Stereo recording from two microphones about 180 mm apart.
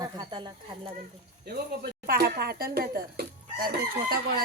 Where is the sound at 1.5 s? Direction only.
55° right (ahead or behind).